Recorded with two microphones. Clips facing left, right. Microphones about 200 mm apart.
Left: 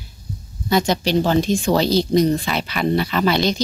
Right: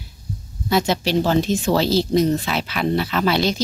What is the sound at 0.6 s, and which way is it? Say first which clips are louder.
Speech: left 1 dB; 5° right (ahead or behind).